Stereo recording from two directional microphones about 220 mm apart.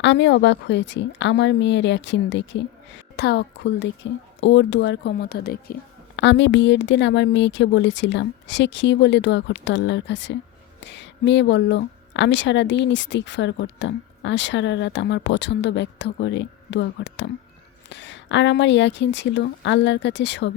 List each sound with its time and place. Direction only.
0.0 s a woman's voice: 55° left (ahead or behind)